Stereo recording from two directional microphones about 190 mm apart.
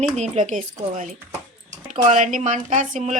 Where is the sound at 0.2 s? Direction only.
40° right (ahead or behind).